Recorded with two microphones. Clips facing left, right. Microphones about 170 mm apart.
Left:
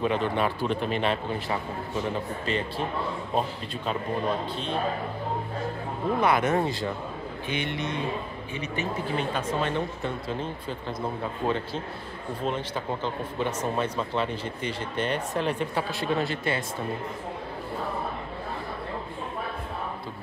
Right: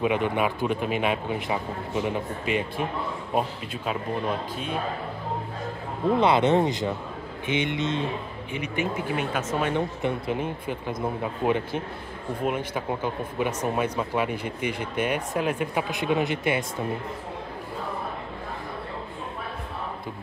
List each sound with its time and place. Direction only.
0.0 s speech: 10° right (ahead or behind)
6.1 s speech: 25° right (ahead or behind)